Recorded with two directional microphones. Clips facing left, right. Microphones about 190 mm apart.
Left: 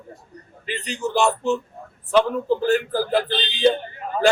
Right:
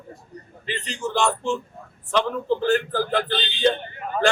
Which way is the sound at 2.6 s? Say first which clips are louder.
Even; 40° left (ahead or behind).